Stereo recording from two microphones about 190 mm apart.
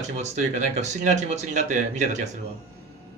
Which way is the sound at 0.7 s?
35° right (ahead or behind).